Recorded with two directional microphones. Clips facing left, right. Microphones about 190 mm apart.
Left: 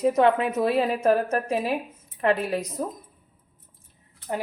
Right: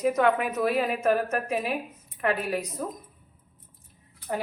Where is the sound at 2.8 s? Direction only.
30° left (ahead or behind).